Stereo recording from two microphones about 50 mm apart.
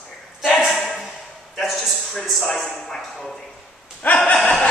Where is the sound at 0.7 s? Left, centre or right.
Centre.